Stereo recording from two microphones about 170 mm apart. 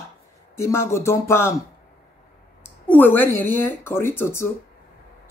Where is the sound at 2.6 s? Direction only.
10° left (ahead or behind).